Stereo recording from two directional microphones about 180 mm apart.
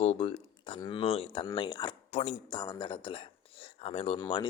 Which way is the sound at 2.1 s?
35° left (ahead or behind).